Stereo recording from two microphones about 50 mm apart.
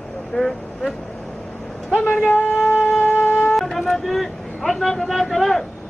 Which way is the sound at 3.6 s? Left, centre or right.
Centre.